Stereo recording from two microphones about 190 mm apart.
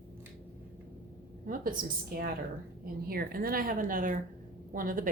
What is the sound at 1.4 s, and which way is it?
Speech, 45° right (ahead or behind).